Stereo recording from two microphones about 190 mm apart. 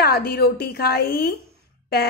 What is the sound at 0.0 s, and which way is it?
A woman's voice, 55° left (ahead or behind).